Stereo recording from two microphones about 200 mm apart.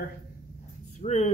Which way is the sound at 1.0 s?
35° left (ahead or behind).